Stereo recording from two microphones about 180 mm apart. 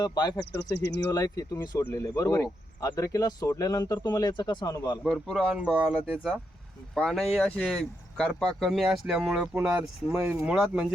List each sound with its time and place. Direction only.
0.0 s speech: 20° left (ahead or behind)
0.5 s speech: 70° left (ahead or behind)
1.1 s speech: 20° left (ahead or behind)
5.0 s speech: centre (ahead or behind)